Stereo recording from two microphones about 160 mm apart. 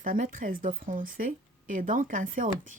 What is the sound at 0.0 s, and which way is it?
Speech, 55° right (ahead or behind).